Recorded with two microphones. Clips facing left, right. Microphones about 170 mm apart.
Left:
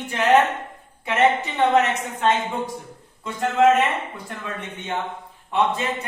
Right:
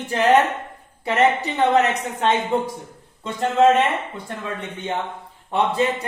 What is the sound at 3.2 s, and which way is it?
Speech, 25° right (ahead or behind).